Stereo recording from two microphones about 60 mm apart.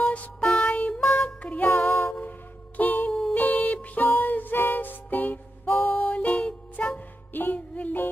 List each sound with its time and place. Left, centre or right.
0.4 s music: centre
1.7 s music: left
3.1 s music: centre
3.3 s music: left
7.3 s music: left